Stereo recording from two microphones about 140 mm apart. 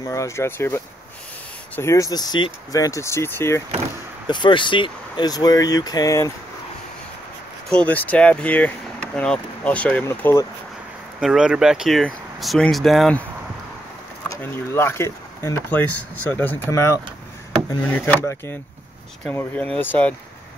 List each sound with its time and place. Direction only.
0.0 s speech: 20° left (ahead or behind)
4.3 s speech: 35° left (ahead or behind)
7.7 s speech: 10° left (ahead or behind)
11.1 s speech: 5° right (ahead or behind)
14.3 s speech: 15° left (ahead or behind)